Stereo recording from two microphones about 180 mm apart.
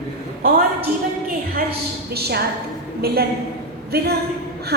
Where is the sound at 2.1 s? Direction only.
60° right (ahead or behind).